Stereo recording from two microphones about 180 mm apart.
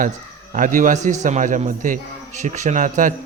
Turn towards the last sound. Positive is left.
turn(degrees=-45)  # may be behind; listen again after turning